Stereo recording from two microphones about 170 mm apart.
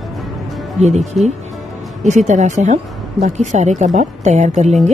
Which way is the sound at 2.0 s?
45° right (ahead or behind).